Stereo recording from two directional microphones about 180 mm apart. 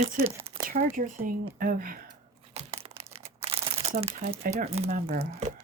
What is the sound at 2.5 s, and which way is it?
Crumpling, 35° right (ahead or behind).